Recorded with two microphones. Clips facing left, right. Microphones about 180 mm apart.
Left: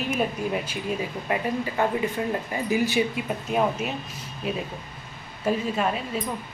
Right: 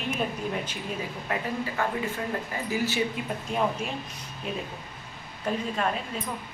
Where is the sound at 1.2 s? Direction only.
20° left (ahead or behind).